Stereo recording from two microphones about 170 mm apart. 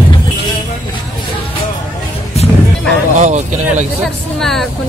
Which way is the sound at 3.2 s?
45° right (ahead or behind).